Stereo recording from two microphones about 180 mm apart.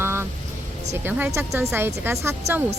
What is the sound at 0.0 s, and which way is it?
Music, 15° right (ahead or behind).